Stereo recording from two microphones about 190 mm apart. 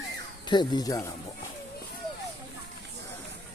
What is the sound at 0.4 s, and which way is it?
Speech, 25° left (ahead or behind).